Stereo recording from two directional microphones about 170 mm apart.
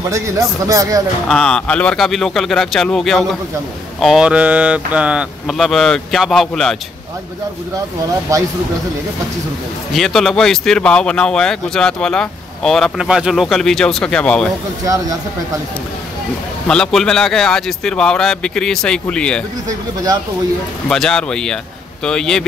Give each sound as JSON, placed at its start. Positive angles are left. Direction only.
{"t": 0.1, "sound": "a man's voice", "side_deg": -20}
{"t": 1.3, "sound": "a man's voice", "side_deg": 5}
{"t": 8.3, "sound": "a man's voice", "side_deg": -20}
{"t": 9.9, "sound": "a man's voice", "side_deg": 0}
{"t": 16.6, "sound": "a man's voice", "side_deg": 5}
{"t": 20.9, "sound": "a man's voice", "side_deg": 5}